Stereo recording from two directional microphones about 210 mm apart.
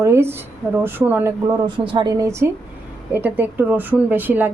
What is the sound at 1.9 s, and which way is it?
Speech, 20° right (ahead or behind).